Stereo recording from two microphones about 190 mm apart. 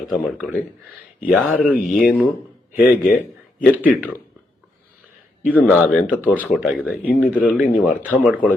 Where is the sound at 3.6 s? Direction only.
10° right (ahead or behind).